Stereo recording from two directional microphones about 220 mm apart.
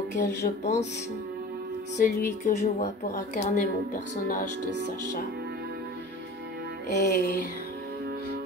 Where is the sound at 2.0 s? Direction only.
35° left (ahead or behind).